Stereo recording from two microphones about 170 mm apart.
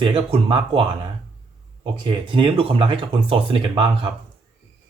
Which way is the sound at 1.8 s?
30° right (ahead or behind).